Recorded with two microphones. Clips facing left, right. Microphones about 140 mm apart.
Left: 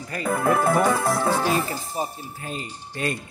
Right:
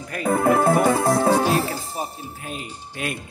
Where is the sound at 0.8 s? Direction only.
25° right (ahead or behind).